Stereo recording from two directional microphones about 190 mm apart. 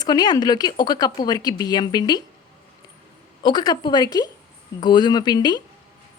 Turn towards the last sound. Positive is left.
turn(degrees=20)  # may be behind; listen again after turning